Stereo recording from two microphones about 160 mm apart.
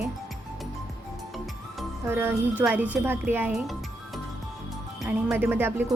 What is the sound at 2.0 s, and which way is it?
Speech, 15° right (ahead or behind).